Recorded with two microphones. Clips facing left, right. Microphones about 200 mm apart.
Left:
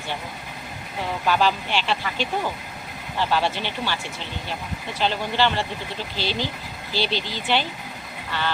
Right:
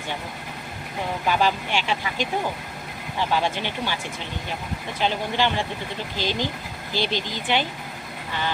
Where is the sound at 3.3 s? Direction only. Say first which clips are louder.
Right 1 dB; 15° right (ahead or behind).